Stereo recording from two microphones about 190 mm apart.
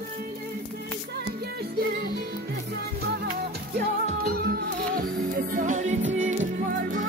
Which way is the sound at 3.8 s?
55° right (ahead or behind).